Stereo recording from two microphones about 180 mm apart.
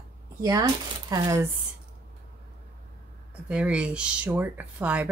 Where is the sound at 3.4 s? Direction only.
5° right (ahead or behind).